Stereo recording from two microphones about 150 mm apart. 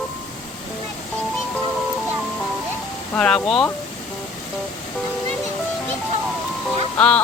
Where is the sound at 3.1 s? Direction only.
5° left (ahead or behind).